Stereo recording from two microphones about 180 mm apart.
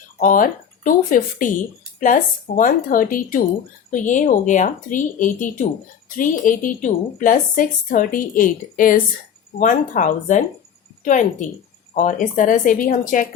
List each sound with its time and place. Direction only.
0.2 s speech: 50° left (ahead or behind)